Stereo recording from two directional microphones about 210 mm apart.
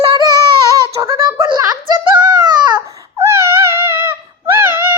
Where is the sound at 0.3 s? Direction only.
15° right (ahead or behind).